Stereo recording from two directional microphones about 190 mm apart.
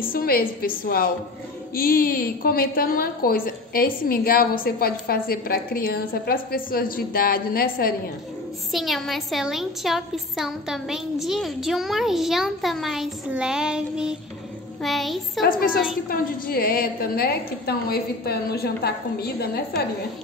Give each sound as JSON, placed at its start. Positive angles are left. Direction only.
{"t": 0.1, "sound": "a woman's voice", "side_deg": 50}
{"t": 8.7, "sound": "a woman's voice", "side_deg": 0}
{"t": 15.4, "sound": "a woman's voice", "side_deg": 50}